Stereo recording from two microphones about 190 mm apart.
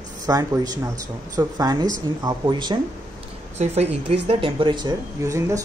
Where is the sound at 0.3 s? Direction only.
15° right (ahead or behind).